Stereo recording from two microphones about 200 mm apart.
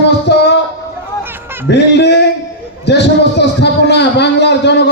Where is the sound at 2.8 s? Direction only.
55° left (ahead or behind).